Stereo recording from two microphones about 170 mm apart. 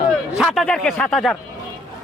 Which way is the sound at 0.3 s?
Centre (ahead or behind).